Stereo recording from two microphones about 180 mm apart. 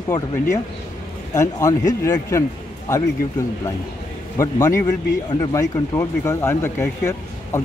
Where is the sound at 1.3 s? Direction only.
20° left (ahead or behind).